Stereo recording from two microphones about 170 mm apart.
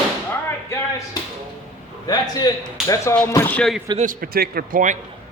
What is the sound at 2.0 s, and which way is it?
A man's voice, 25° left (ahead or behind).